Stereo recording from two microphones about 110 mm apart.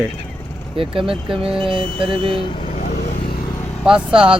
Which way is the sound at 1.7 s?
55° right (ahead or behind).